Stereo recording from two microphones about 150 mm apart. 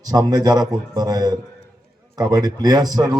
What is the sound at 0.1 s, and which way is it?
Speech, 25° right (ahead or behind).